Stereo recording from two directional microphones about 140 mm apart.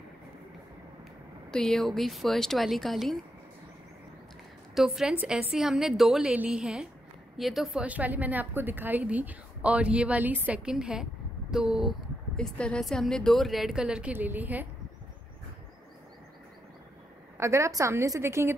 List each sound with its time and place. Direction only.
1.5 s a woman's voice: 5° left (ahead or behind)
4.7 s a woman's voice: 5° right (ahead or behind)
17.4 s a woman's voice: 20° right (ahead or behind)